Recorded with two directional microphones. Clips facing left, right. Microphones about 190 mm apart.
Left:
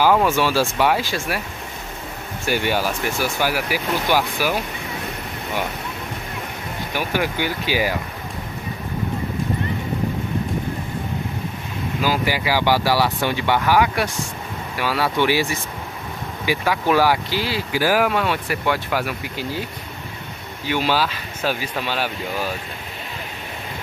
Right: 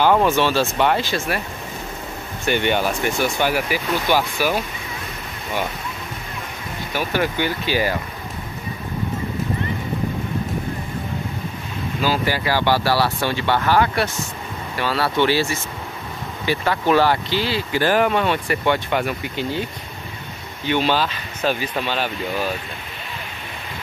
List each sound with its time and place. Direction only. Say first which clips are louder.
0.0 s speech: right 1 dB; 5° left (ahead or behind)
2.4 s speech: right 2 dB; 5° left (ahead or behind)
6.9 s speech: right 1 dB; 15° left (ahead or behind)
12.0 s speech: right 1 dB; 10° left (ahead or behind)
20.6 s speech: right 1 dB; 5° left (ahead or behind)